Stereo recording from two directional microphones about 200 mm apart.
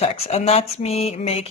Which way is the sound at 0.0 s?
30° left (ahead or behind).